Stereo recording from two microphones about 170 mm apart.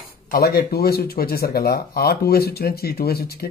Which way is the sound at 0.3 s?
65° left (ahead or behind).